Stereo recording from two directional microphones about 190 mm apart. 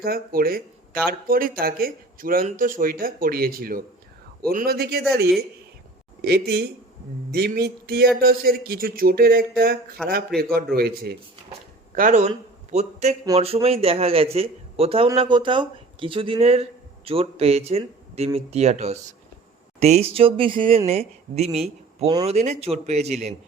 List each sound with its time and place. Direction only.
0.0 s speech: 50° right (ahead or behind)
11.9 s speech: 40° right (ahead or behind)